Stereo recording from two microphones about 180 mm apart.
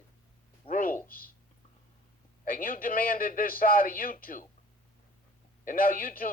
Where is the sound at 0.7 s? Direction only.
50° left (ahead or behind).